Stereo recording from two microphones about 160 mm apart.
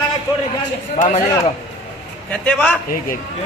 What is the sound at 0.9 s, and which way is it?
Speech, 45° left (ahead or behind).